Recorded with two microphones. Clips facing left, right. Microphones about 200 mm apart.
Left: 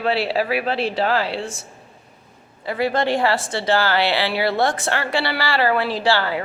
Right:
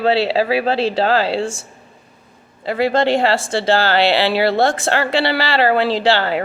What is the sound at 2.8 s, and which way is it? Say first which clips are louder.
Speech: right 4 dB; 25° right (ahead or behind).